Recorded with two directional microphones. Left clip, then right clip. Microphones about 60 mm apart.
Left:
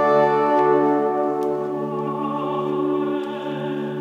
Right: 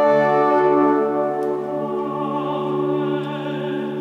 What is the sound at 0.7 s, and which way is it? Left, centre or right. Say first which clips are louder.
Music: right 1 dB; centre.